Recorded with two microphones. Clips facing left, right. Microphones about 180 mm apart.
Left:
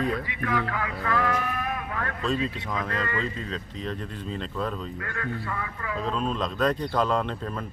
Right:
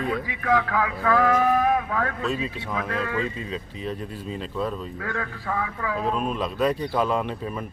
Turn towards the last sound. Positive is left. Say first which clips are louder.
# right 1 dB
turn(degrees=-10)  # may be behind; listen again after turning